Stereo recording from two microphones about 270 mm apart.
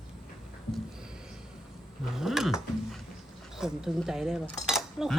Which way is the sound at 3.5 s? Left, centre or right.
Centre.